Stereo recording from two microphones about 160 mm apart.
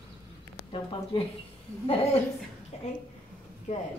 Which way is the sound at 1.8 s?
40° left (ahead or behind).